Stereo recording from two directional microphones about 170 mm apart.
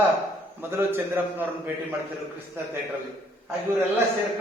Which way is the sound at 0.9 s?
10° right (ahead or behind).